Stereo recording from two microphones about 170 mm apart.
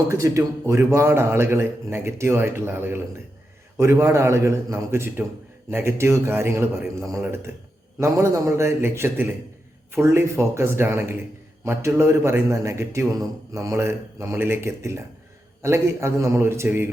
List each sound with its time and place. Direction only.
0.1 s a man's voice: 15° right (ahead or behind)